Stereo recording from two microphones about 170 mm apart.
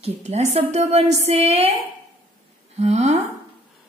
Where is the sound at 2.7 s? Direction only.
40° right (ahead or behind).